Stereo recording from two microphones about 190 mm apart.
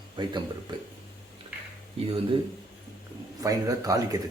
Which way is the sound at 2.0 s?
30° right (ahead or behind).